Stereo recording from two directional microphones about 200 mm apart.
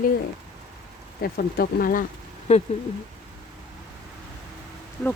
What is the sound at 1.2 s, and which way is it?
Speech, 50° left (ahead or behind).